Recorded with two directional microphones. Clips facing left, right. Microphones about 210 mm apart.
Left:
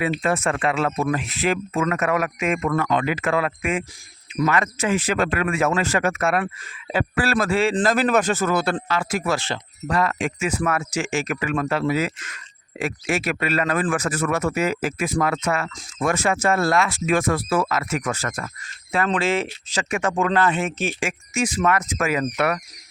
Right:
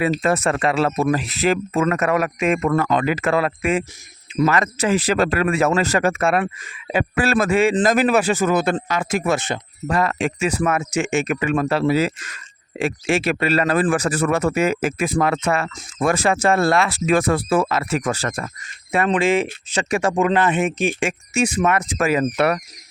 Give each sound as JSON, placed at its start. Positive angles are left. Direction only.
{"t": 0.0, "sound": "a man's voice", "side_deg": -40}
{"t": 10.7, "sound": "a man's voice", "side_deg": -20}
{"t": 19.1, "sound": "speech", "side_deg": -15}
{"t": 19.7, "sound": "a man's voice", "side_deg": -30}
{"t": 21.0, "sound": "a man's voice", "side_deg": -30}